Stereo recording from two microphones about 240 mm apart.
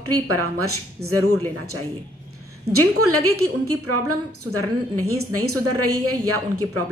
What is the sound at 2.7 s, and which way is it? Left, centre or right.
A woman's voice, right.